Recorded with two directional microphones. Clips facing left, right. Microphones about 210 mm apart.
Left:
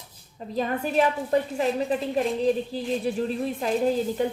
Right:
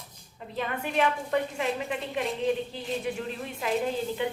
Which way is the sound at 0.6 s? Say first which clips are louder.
Left 4 dB; 35° left (ahead or behind).